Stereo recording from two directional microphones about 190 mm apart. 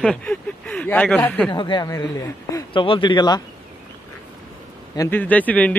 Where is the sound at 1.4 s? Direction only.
25° left (ahead or behind).